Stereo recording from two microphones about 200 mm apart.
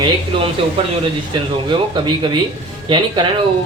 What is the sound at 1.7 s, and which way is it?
Speech, 25° right (ahead or behind).